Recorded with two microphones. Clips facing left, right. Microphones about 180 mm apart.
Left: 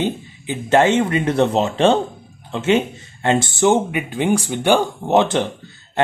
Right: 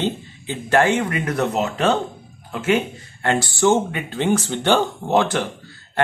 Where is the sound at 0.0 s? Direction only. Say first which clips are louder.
Left 2 dB; 20° left (ahead or behind).